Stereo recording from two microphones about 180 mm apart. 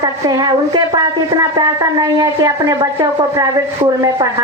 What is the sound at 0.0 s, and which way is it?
Speech, 20° right (ahead or behind).